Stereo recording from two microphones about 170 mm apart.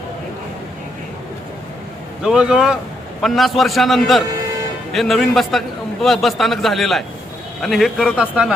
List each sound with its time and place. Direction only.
2.2 s a man's voice: 5° right (ahead or behind)